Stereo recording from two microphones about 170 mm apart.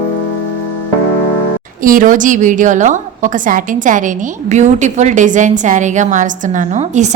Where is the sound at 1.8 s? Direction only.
55° right (ahead or behind).